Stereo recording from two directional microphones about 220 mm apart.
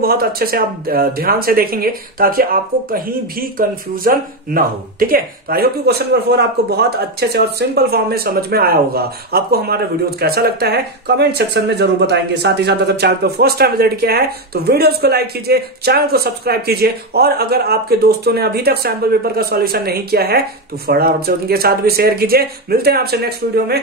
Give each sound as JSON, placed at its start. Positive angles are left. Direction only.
{"t": 0.0, "sound": "speech", "side_deg": -45}